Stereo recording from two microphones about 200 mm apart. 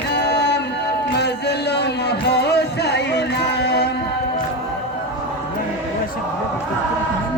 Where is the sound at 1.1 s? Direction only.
55° left (ahead or behind).